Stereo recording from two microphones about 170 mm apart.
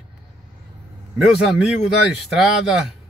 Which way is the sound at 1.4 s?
Centre (ahead or behind).